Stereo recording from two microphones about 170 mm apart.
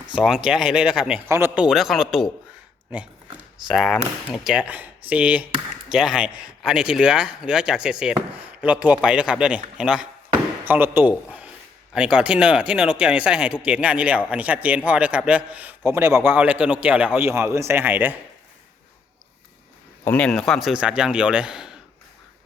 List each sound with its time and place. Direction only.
0.1 s speech: 5° right (ahead or behind)
3.7 s speech: centre (ahead or behind)
20.1 s speech: 5° left (ahead or behind)